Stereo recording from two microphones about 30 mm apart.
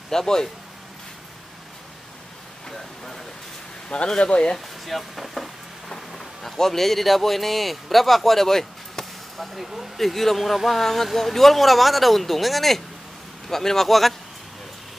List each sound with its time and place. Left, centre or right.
0.1 s speech: centre
2.7 s a sound: centre
4.2 s speech: left
4.8 s speech: centre
5.9 s a man's voice: centre
9.5 s a man's voice: centre